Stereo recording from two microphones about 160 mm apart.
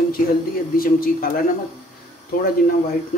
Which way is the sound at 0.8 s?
65° left (ahead or behind).